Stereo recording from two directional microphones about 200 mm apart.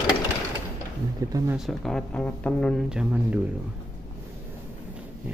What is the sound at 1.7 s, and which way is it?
Speech, centre (ahead or behind).